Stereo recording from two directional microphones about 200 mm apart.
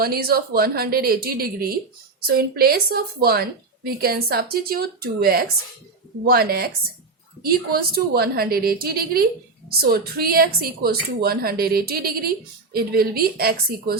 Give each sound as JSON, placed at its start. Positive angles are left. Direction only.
{"t": 0.0, "sound": "a woman's voice", "side_deg": -50}